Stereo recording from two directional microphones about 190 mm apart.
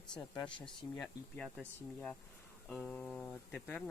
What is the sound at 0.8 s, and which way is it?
Speech, 20° left (ahead or behind).